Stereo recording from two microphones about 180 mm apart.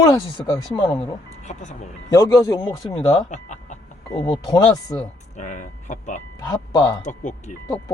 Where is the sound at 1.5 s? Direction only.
40° left (ahead or behind).